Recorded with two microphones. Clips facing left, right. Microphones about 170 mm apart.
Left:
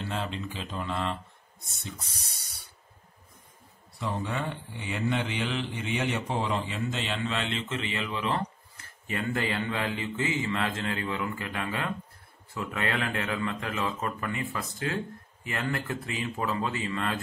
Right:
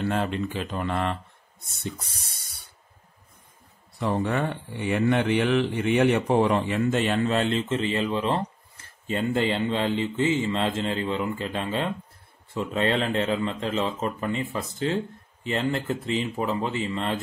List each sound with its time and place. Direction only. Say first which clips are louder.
0.0 s a man's voice: right 7 dB; 55° right (ahead or behind)
4.0 s a man's voice: right 7 dB; 60° right (ahead or behind); by 17.2 s 25° right (ahead or behind)